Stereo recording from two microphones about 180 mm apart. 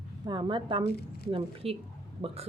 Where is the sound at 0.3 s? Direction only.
25° right (ahead or behind).